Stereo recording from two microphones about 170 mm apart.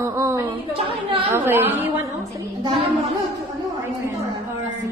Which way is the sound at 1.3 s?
15° right (ahead or behind).